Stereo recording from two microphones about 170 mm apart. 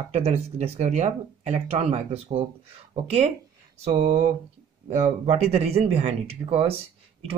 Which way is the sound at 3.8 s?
40° right (ahead or behind).